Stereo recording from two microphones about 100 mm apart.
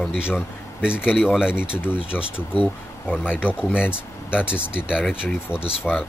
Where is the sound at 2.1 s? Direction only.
15° left (ahead or behind).